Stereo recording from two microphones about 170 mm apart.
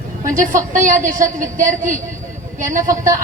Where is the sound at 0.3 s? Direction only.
50° right (ahead or behind).